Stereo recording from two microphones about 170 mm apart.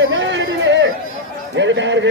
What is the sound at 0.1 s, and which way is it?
Chatter, 90° right.